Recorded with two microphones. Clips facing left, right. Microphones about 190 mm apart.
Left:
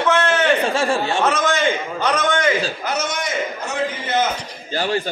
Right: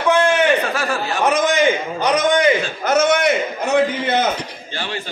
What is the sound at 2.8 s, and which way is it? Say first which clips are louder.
Speech: right 8 dB; 55° right (ahead or behind).